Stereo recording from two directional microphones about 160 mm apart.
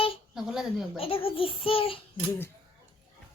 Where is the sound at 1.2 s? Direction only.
35° left (ahead or behind).